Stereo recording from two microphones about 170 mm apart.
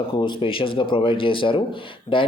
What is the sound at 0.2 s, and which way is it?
Speech, 30° left (ahead or behind).